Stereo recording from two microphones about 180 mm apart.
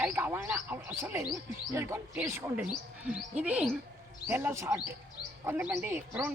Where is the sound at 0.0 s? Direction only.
10° right (ahead or behind).